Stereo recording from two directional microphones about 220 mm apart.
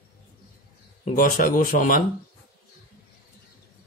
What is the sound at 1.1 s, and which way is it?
Speech, 40° left (ahead or behind).